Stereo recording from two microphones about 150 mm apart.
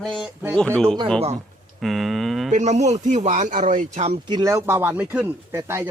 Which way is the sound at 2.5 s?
50° right (ahead or behind).